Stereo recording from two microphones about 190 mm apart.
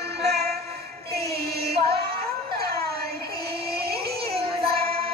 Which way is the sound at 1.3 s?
55° right (ahead or behind).